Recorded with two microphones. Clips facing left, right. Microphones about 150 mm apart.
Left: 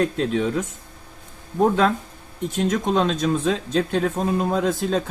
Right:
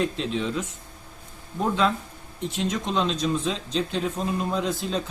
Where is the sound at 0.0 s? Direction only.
50° left (ahead or behind).